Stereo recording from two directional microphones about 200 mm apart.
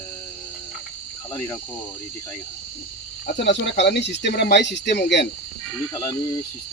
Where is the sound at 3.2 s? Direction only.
60° left (ahead or behind).